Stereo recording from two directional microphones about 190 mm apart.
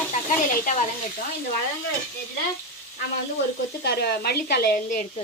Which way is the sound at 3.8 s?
55° left (ahead or behind).